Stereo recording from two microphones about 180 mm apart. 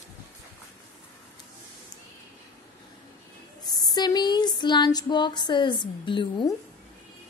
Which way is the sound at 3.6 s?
20° left (ahead or behind).